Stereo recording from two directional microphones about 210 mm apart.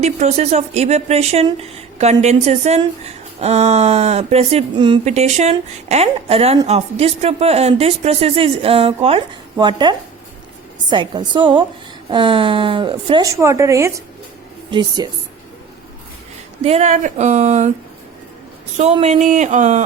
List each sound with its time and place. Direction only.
0.0 s a woman's voice: 30° right (ahead or behind)
16.6 s speech: 30° right (ahead or behind)
18.8 s speech: 30° right (ahead or behind)